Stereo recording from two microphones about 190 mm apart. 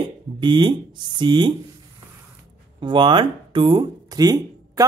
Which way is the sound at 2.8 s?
25° right (ahead or behind).